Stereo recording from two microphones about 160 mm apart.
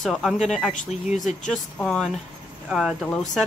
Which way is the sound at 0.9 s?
45° left (ahead or behind).